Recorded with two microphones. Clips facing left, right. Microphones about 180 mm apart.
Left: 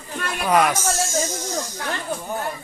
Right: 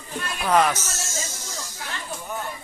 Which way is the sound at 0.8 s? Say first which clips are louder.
Left 11 dB; 55° left (ahead or behind).